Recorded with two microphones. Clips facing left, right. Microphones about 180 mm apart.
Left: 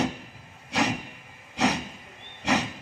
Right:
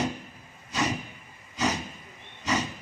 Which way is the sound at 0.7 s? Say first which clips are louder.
Left 2 dB; 65° left (ahead or behind).